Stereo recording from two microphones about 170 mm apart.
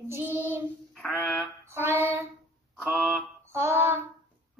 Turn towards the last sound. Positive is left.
turn(degrees=-15)  # may be behind; listen again after turning